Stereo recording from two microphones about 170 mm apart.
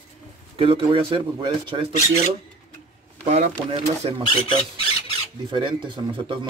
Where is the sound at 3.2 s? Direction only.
40° right (ahead or behind).